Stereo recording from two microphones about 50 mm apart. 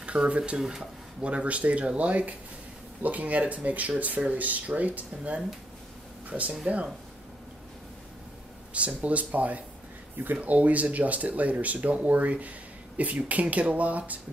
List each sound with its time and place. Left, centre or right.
0.0 s speech: right
0.6 s speech: centre
1.2 s speech: right
6.5 s speech: right
8.7 s speech: right